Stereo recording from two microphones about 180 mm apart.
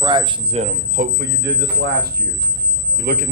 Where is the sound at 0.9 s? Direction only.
60° right (ahead or behind).